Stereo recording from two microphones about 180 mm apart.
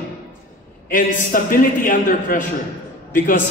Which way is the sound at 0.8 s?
50° left (ahead or behind).